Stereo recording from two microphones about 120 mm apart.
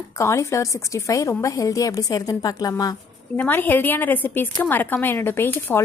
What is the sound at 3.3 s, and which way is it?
A woman's voice, 15° left (ahead or behind).